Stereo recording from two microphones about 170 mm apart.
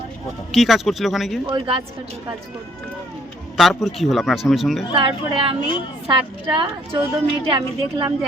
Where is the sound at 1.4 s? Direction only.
30° right (ahead or behind).